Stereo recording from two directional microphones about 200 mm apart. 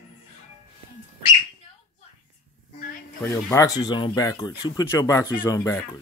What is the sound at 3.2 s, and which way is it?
Speech, 15° left (ahead or behind).